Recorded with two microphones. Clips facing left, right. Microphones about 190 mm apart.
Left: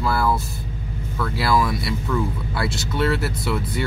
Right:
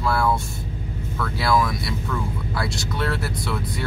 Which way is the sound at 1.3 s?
Centre (ahead or behind).